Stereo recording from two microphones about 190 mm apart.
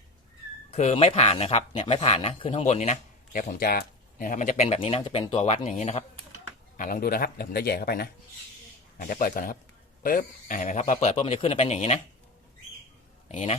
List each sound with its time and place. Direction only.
0.7 s speech: 35° left (ahead or behind)
6.7 s speech: 45° left (ahead or behind)
13.2 s a man's voice: 35° left (ahead or behind)